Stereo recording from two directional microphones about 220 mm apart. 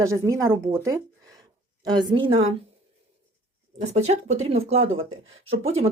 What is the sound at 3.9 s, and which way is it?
Speech, 30° right (ahead or behind).